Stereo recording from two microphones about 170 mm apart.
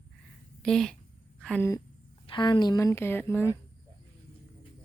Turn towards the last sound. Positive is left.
turn(degrees=15)  # may be behind; listen again after turning